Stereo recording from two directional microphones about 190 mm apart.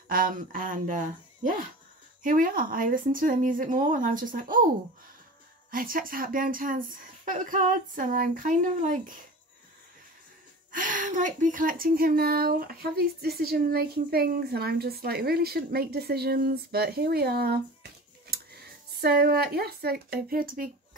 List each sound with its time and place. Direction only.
0.1 s speech: 45° right (ahead or behind)
5.7 s speech: 50° right (ahead or behind)
10.7 s a woman's voice: 45° right (ahead or behind)